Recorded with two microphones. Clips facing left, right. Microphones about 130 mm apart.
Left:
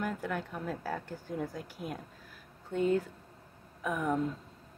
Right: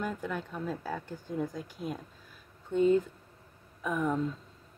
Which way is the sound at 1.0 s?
15° right (ahead or behind).